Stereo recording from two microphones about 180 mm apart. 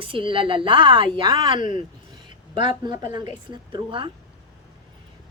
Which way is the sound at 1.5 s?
45° left (ahead or behind).